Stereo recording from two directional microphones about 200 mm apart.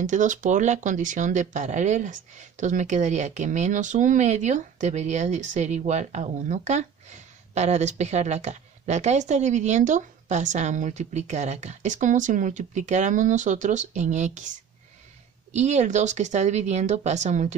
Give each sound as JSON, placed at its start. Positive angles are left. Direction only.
{"t": 0.0, "sound": "a woman's voice", "side_deg": -40}
{"t": 15.5, "sound": "a woman's voice", "side_deg": -35}